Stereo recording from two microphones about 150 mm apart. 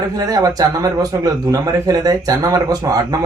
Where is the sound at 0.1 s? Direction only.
25° right (ahead or behind).